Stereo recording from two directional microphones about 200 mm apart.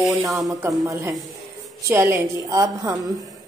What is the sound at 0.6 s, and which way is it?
A woman's voice, 15° right (ahead or behind).